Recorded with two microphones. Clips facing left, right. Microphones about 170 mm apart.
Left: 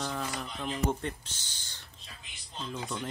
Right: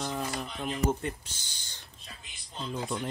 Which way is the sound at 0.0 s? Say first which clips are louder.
Right 1 dB; 15° right (ahead or behind).